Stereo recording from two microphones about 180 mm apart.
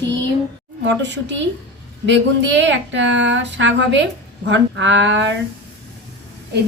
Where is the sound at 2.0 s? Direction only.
90° right.